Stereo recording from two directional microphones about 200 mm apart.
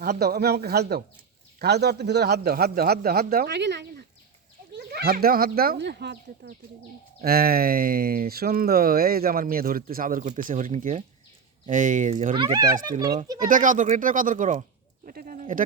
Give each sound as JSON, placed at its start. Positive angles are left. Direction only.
{"t": 0.0, "sound": "speech", "side_deg": -50}
{"t": 12.1, "sound": "speech", "side_deg": -25}
{"t": 13.4, "sound": "speech", "side_deg": -40}